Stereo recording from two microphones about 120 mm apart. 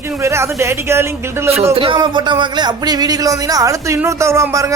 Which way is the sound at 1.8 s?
45° right (ahead or behind).